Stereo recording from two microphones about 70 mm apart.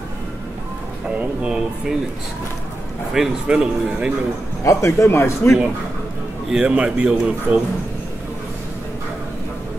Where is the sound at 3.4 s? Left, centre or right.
Centre.